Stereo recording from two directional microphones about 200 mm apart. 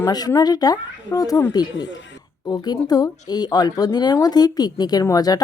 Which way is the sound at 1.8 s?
65° left (ahead or behind).